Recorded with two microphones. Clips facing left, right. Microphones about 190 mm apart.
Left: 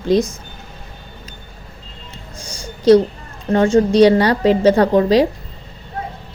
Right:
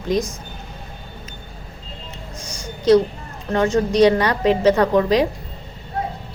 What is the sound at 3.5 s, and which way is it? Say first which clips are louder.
A woman's voice: left 5 dB; 30° left (ahead or behind).